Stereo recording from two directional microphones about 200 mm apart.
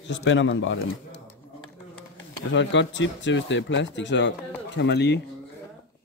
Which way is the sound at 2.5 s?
65° left (ahead or behind).